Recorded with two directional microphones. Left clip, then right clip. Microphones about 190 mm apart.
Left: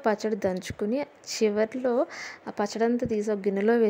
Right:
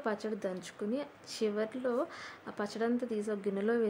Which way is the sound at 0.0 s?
35° left (ahead or behind).